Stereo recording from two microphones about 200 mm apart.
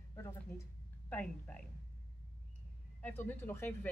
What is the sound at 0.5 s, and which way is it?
Speech, 15° left (ahead or behind).